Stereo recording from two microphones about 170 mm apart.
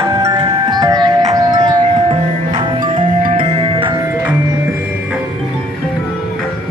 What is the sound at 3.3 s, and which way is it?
Music, 30° right (ahead or behind).